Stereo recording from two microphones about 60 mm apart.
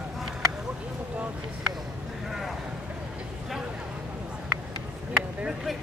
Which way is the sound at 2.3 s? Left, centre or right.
Centre.